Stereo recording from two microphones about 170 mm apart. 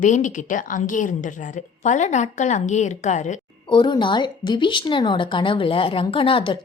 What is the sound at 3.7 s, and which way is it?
Speech, 25° left (ahead or behind).